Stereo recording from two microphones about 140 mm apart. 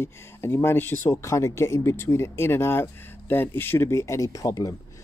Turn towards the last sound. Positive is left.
turn(degrees=25)  # may be behind; listen again after turning